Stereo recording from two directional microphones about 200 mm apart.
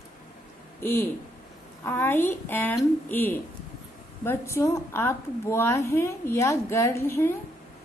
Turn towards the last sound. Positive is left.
turn(degrees=10)  # may be behind; listen again after turning